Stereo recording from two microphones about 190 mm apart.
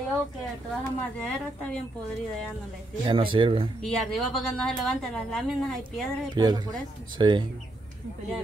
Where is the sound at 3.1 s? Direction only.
25° right (ahead or behind).